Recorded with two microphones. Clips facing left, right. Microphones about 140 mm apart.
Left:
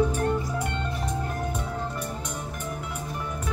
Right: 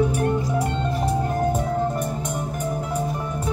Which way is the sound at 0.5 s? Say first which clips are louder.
Right 6 dB; 30° right (ahead or behind).